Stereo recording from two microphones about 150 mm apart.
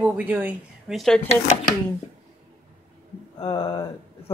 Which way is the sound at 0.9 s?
5° left (ahead or behind).